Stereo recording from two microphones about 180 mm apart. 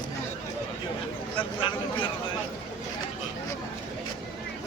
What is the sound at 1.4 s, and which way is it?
Speech, 30° left (ahead or behind).